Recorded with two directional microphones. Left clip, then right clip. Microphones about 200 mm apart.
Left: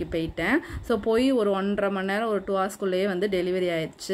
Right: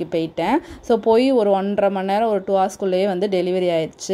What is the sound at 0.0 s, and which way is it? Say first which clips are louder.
A woman's voice: right 6 dB; 15° right (ahead or behind).